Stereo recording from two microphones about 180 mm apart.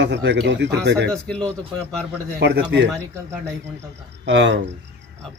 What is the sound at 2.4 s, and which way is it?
Speech, 65° right (ahead or behind).